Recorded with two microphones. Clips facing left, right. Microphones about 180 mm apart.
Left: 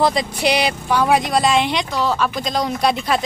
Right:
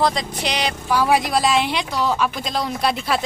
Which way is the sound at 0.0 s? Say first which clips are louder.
Left 4 dB; 5° left (ahead or behind).